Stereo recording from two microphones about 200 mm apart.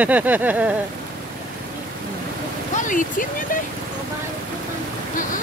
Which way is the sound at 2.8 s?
40° left (ahead or behind).